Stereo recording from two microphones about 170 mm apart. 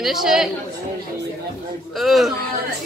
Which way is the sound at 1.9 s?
Centre (ahead or behind).